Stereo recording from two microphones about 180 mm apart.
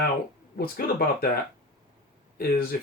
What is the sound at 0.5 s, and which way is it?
Speech, 55° left (ahead or behind).